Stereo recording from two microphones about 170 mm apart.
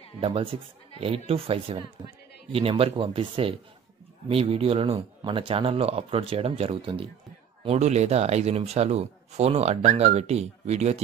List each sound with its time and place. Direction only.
0.2 s speech: 30° right (ahead or behind)